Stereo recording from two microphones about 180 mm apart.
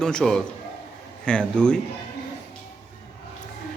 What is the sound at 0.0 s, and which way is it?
Speech, 5° left (ahead or behind).